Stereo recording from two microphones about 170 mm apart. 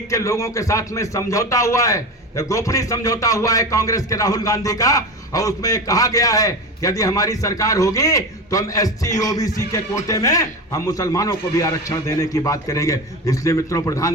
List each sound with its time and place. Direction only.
0.1 s a man's voice: 20° left (ahead or behind)